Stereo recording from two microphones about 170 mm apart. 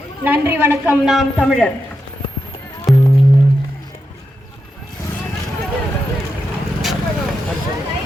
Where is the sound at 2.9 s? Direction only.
Centre (ahead or behind).